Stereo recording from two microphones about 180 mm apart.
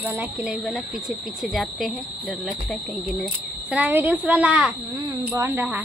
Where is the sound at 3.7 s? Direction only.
10° right (ahead or behind).